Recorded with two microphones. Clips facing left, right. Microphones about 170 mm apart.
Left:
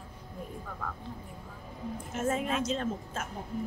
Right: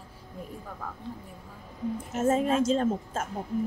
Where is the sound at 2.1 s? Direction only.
40° right (ahead or behind).